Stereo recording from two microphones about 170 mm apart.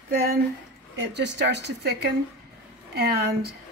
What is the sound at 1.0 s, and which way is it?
A woman's voice, 85° right.